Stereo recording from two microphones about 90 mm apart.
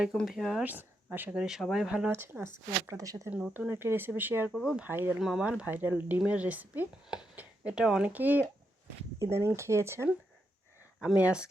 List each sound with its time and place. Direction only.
0.3 s speech: 5° right (ahead or behind)
0.6 s speech: 20° right (ahead or behind)
1.3 s speech: 5° right (ahead or behind)
2.0 s speech: 20° right (ahead or behind); by 3.2 s 40° right (ahead or behind)
3.2 s speech: 20° right (ahead or behind)
3.7 s speech: 25° right (ahead or behind)
4.5 s speech: centre (ahead or behind)
4.9 s speech: 25° right (ahead or behind)
5.2 s speech: 5° right (ahead or behind)
5.5 s speech: 20° right (ahead or behind)
9.1 s speech: 30° right (ahead or behind)
11.0 s speech: 10° right (ahead or behind)